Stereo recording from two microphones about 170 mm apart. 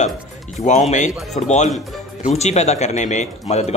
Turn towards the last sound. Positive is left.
turn(degrees=40)  # may be behind; listen again after turning